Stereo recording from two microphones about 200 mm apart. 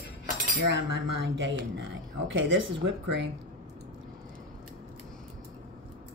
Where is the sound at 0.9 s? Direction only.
60° right (ahead or behind).